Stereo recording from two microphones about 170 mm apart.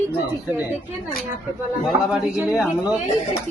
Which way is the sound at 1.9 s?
5° right (ahead or behind).